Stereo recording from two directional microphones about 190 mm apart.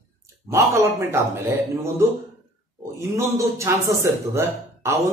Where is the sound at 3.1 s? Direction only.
15° right (ahead or behind).